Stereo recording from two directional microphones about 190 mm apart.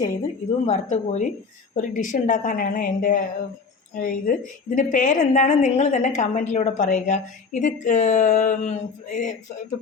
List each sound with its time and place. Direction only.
0.6 s a woman's voice: 35° left (ahead or behind)